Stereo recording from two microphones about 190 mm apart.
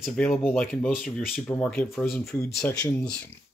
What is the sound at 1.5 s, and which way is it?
Speech, 10° left (ahead or behind).